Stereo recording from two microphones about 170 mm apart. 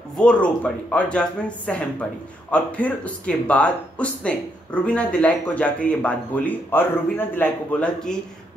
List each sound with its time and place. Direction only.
0.2 s a woman's voice: 5° left (ahead or behind)